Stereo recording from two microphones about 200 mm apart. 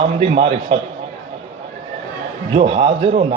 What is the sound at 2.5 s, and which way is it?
Speech, 30° right (ahead or behind).